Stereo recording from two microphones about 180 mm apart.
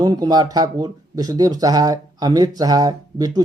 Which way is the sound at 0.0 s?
20° right (ahead or behind).